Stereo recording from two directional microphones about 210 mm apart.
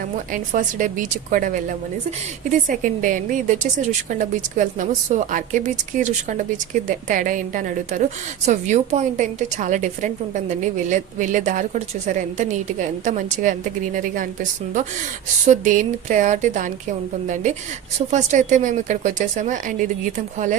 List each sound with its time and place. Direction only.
0.5 s a woman's voice: 40° right (ahead or behind)
15.4 s a woman's voice: 35° right (ahead or behind)